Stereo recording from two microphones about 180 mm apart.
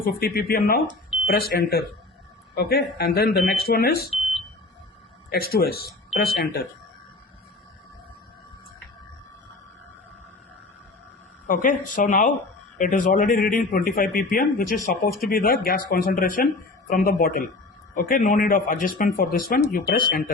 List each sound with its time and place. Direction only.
0.0 s speech: 55° left (ahead or behind)
5.3 s speech: 60° left (ahead or behind)
11.4 s speech: 45° left (ahead or behind)